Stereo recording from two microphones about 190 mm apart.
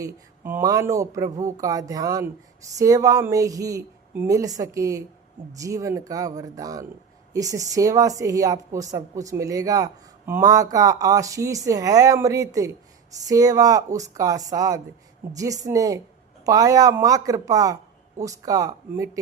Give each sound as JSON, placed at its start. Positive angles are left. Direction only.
{"t": 0.0, "sound": "speech", "side_deg": -15}